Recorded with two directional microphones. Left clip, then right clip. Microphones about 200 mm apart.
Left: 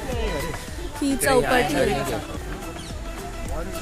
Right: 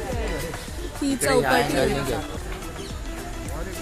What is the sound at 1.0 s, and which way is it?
Speech, 10° left (ahead or behind).